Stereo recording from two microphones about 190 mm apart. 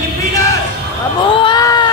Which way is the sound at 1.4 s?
20° left (ahead or behind).